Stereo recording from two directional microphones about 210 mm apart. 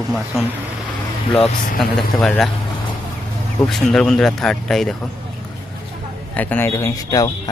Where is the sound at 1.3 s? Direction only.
Centre (ahead or behind).